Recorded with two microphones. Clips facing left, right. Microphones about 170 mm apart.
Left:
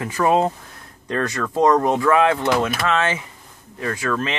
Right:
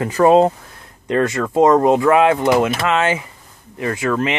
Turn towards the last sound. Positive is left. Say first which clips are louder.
# right 4 dB
turn(degrees=-20)  # may be behind; listen again after turning